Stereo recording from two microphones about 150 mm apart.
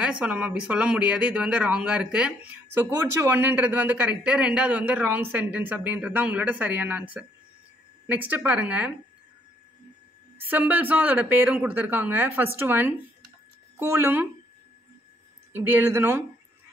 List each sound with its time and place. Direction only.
0.0 s speech: 10° right (ahead or behind)
10.4 s speech: 10° right (ahead or behind)
15.5 s speech: 15° right (ahead or behind)